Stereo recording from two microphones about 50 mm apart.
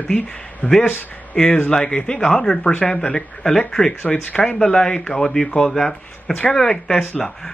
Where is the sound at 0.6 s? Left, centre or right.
Left.